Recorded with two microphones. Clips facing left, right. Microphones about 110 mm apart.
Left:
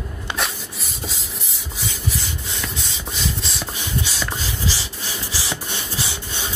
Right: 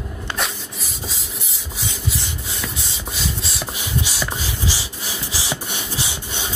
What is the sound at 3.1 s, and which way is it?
Rub, 5° right (ahead or behind).